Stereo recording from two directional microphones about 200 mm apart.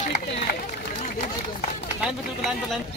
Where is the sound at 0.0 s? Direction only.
35° left (ahead or behind).